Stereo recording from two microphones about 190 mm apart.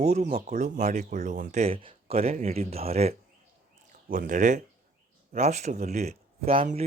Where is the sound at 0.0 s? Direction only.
40° right (ahead or behind).